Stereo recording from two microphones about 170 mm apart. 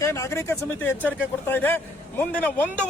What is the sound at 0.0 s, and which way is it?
A man's voice, 15° left (ahead or behind).